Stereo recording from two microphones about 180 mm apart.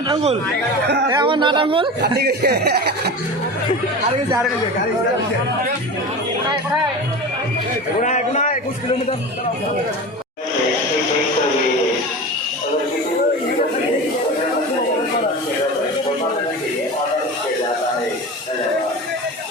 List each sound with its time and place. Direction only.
0.1 s speech: 35° right (ahead or behind)
2.0 s speech: 65° right (ahead or behind)
7.9 s a man's voice: 40° left (ahead or behind)